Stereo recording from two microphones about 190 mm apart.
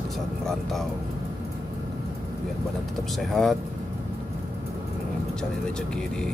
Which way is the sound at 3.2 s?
Centre (ahead or behind).